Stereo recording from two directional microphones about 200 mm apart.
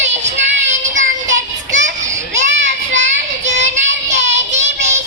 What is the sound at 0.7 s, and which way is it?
Child singing, 40° right (ahead or behind).